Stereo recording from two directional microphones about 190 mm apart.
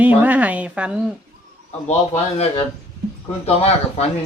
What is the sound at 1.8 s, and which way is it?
A man's voice, 35° left (ahead or behind).